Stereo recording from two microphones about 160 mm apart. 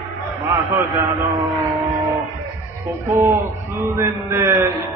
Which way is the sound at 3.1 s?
15° right (ahead or behind).